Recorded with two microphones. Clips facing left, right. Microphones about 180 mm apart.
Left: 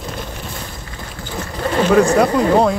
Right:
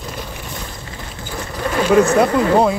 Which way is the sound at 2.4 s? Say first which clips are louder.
Even; 5° right (ahead or behind).